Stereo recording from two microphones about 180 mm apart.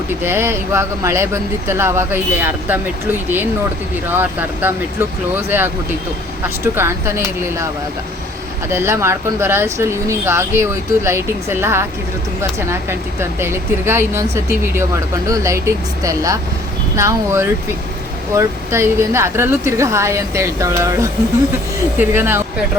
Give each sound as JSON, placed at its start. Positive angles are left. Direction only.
{"t": 0.2, "sound": "speech", "side_deg": -15}
{"t": 6.7, "sound": "speech", "side_deg": -15}
{"t": 8.7, "sound": "speech", "side_deg": -15}